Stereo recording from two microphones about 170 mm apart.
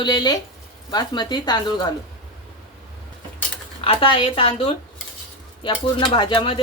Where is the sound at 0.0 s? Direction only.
25° left (ahead or behind).